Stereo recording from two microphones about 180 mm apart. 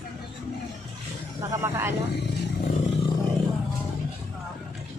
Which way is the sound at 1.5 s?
15° right (ahead or behind).